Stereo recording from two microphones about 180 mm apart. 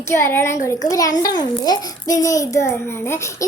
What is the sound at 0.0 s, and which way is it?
A child's voice, 15° left (ahead or behind).